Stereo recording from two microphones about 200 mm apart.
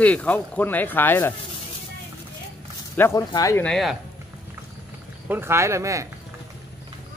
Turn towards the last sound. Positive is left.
turn(degrees=-15)  # may be behind; listen again after turning